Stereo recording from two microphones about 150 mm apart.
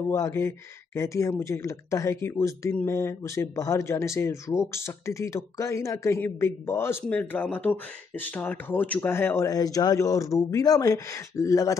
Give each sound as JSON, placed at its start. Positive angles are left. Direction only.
{"t": 0.1, "sound": "speech", "side_deg": 20}